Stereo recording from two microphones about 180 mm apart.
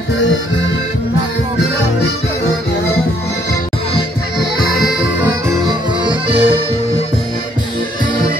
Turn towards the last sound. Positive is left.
turn(degrees=-30)  # may be behind; listen again after turning